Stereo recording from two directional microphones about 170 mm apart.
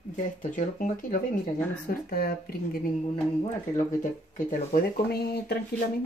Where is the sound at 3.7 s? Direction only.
50° left (ahead or behind).